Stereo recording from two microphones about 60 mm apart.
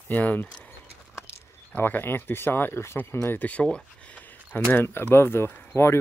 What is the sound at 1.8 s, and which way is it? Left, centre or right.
Speech, left.